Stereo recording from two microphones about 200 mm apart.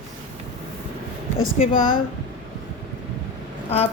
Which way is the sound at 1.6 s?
35° left (ahead or behind).